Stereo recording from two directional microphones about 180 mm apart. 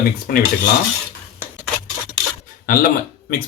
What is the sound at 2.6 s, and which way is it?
Speech, 50° left (ahead or behind).